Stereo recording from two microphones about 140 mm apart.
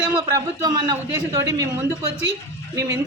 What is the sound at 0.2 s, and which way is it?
A man's voice, 25° right (ahead or behind).